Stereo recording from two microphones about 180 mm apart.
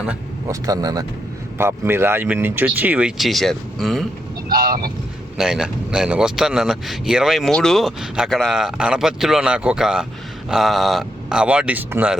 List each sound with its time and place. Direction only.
0.0 s vehicle: 5° right (ahead or behind)
0.6 s speech: 20° right (ahead or behind); by 4.0 s centre (ahead or behind)
4.4 s speech: 55° right (ahead or behind)
5.4 s speech: 5° right (ahead or behind)